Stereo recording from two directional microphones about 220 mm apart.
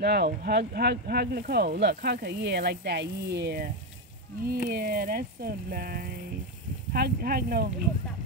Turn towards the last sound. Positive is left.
turn(degrees=-40)  # may be behind; listen again after turning